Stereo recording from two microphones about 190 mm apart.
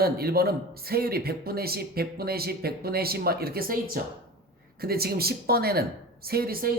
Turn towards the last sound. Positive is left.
turn(degrees=-50)  # may be behind; listen again after turning